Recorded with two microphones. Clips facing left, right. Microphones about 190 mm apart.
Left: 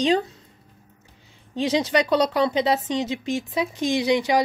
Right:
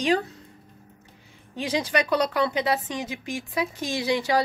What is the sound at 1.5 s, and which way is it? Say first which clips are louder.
Speech: left 4 dB; 25° left (ahead or behind).